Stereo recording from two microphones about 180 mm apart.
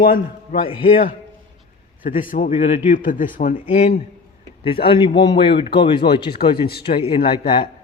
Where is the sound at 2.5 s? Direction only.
30° left (ahead or behind).